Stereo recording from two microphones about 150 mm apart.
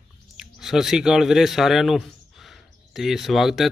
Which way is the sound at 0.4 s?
5° right (ahead or behind).